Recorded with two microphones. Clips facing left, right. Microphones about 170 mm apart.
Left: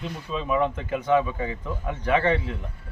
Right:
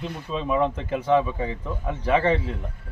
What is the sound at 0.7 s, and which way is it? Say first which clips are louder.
Speech: right 1 dB; 30° right (ahead or behind).